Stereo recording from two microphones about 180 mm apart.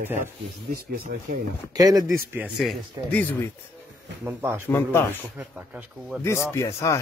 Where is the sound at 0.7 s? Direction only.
60° right (ahead or behind).